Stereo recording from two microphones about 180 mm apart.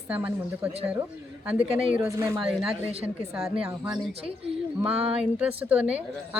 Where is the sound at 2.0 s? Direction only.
15° right (ahead or behind).